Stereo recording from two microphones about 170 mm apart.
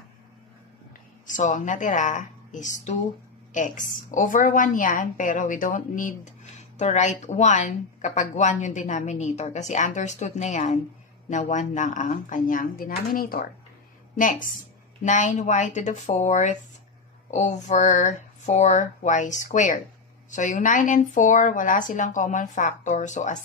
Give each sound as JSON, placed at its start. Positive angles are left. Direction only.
{"t": 1.2, "sound": "speech", "side_deg": 50}
{"t": 15.0, "sound": "speech", "side_deg": 45}